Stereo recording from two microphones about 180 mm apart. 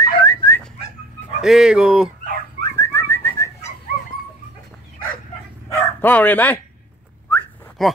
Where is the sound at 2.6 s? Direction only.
15° left (ahead or behind).